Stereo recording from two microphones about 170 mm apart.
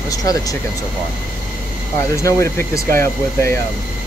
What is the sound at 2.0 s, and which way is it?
Speech, 15° left (ahead or behind).